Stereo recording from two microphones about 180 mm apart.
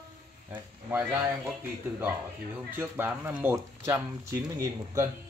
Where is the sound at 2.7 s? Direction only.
10° right (ahead or behind).